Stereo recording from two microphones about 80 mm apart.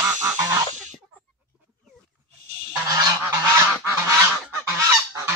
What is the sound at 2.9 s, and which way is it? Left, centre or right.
Goose, right.